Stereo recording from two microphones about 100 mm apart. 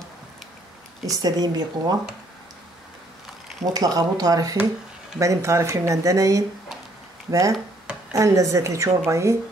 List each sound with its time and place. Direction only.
1.1 s speech: 40° right (ahead or behind)
3.6 s speech: 40° right (ahead or behind)